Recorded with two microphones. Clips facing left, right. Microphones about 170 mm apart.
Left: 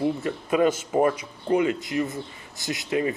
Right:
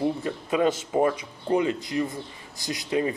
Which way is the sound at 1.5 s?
35° right (ahead or behind).